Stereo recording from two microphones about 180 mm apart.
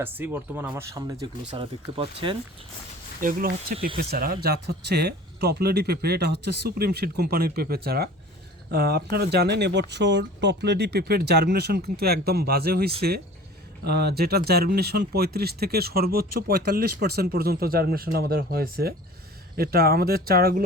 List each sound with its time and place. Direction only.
0.0 s speech: 10° right (ahead or behind)
1.5 s speech: 30° right (ahead or behind)
3.2 s speech: 50° right (ahead or behind)